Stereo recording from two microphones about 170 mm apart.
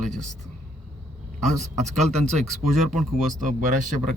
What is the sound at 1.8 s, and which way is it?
Speech, 40° right (ahead or behind).